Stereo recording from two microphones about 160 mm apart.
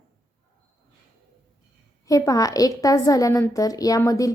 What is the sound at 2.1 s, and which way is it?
A woman's voice, 20° left (ahead or behind).